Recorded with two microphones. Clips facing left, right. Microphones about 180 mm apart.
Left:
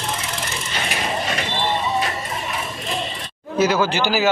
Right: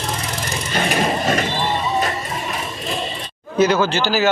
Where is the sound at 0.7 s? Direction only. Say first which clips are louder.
Right 7 dB; 45° right (ahead or behind).